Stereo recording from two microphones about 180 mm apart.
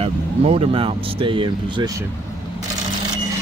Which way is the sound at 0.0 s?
35° right (ahead or behind).